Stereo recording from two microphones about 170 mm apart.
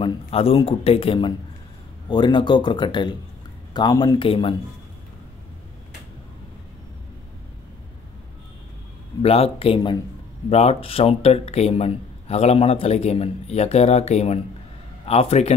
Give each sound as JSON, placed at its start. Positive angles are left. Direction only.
{"t": 0.0, "sound": "speech", "side_deg": 35}
{"t": 9.2, "sound": "speech", "side_deg": 35}